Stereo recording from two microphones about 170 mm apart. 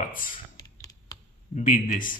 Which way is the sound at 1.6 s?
50° left (ahead or behind).